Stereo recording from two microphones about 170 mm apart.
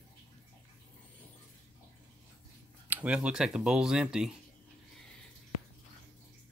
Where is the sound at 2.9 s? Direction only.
5° right (ahead or behind).